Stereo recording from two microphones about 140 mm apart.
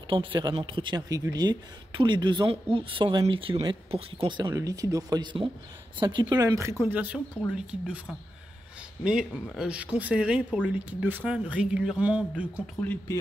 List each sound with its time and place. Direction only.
0.1 s speech: 35° right (ahead or behind); by 12.6 s 10° right (ahead or behind)
12.8 s speech: 10° left (ahead or behind)